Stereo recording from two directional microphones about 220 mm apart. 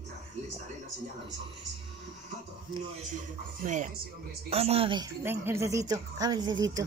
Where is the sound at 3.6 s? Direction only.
35° right (ahead or behind).